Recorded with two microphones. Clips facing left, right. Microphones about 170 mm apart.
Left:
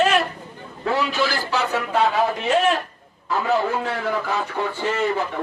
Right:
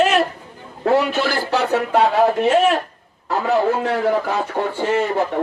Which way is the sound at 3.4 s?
40° right (ahead or behind).